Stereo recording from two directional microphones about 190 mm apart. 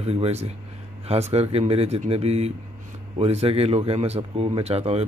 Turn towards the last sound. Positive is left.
turn(degrees=-35)  # may be behind; listen again after turning